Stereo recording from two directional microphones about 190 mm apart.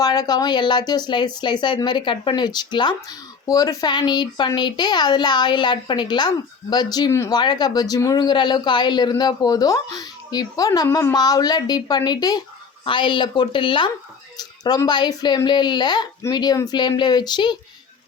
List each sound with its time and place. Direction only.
0.0 s speech: 20° left (ahead or behind)